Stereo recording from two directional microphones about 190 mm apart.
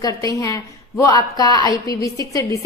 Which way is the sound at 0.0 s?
20° left (ahead or behind).